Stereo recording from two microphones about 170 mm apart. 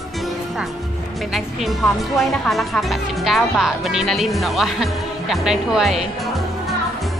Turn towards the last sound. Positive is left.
turn(degrees=0)  # may be behind; listen again after turning